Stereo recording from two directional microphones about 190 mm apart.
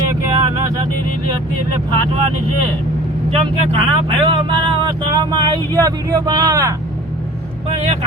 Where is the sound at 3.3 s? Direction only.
30° right (ahead or behind).